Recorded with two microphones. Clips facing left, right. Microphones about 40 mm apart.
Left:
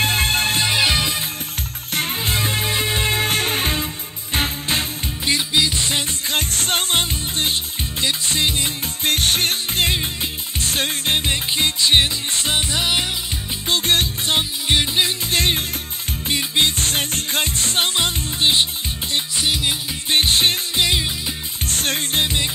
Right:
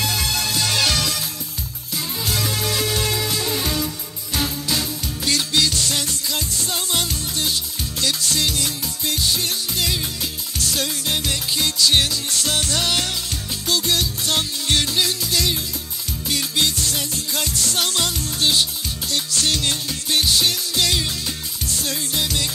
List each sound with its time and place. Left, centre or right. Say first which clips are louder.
0.0 s music: left 4 dB; left
0.7 s music: left 2 dB; left
2.0 s music: left 3 dB; left
5.2 s music: left 1 dB; left
6.3 s music: left 7 dB; left
9.0 s music: left 4 dB; left; by 13.1 s centre
13.7 s music: left 2 dB; left
14.3 s music: left 2 dB; left
19.1 s music: left 1 dB; centre
20.1 s music: left 2 dB; left
21.6 s music: left 4 dB; left